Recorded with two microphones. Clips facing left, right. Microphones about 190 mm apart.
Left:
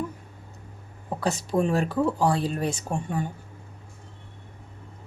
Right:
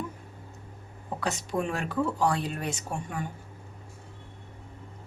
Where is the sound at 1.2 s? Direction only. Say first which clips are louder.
Left 6 dB; 35° left (ahead or behind).